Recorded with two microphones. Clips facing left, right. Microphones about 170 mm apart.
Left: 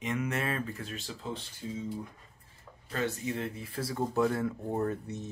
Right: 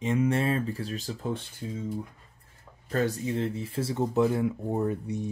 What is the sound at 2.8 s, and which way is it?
Speech, 40° right (ahead or behind).